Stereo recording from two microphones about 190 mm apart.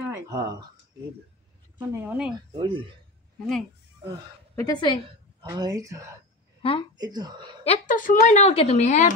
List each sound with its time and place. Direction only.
0.1 s speech: 20° right (ahead or behind)
1.8 s speech: 10° right (ahead or behind)
2.5 s speech: 25° right (ahead or behind)
4.6 s a woman's voice: 20° left (ahead or behind)
5.4 s speech: 20° right (ahead or behind)
6.6 s a woman's voice: 30° left (ahead or behind)
7.0 s speech: 20° right (ahead or behind)
7.6 s a woman's voice: 40° left (ahead or behind)